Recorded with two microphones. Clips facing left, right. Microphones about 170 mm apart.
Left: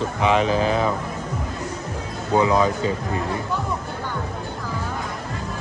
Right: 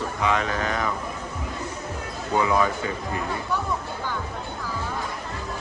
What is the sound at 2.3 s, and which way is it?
Speech, 20° left (ahead or behind).